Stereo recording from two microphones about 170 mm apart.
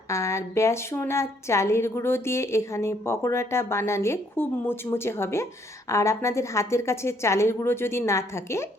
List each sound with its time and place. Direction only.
0.1 s a woman's voice: 15° left (ahead or behind)